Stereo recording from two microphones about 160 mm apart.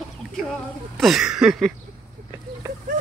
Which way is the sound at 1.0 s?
Centre (ahead or behind).